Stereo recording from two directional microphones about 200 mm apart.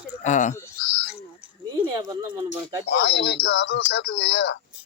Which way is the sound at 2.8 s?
55° left (ahead or behind).